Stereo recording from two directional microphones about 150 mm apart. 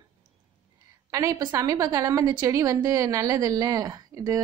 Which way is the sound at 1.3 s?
25° right (ahead or behind).